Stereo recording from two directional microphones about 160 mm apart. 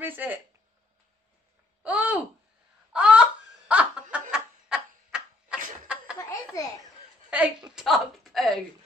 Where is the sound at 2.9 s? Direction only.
5° right (ahead or behind).